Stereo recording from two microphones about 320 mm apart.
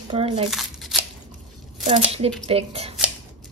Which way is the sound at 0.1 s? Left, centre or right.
Centre.